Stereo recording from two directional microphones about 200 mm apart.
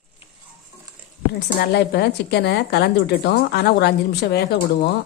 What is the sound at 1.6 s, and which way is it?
A woman's voice, 55° left (ahead or behind).